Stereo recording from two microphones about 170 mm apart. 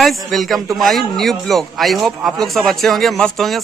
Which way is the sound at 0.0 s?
Centre (ahead or behind).